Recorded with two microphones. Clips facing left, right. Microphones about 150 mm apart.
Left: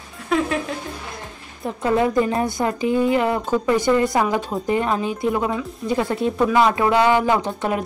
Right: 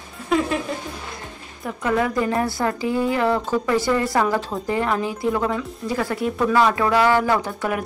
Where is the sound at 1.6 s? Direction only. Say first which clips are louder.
Left 2 dB; 25° left (ahead or behind).